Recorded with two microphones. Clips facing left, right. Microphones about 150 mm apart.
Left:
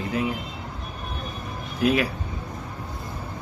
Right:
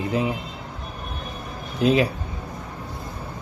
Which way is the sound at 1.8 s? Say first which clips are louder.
Right 3 dB; 25° right (ahead or behind).